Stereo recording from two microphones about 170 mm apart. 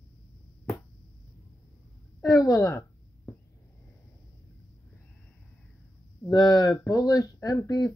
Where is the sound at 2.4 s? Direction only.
20° left (ahead or behind).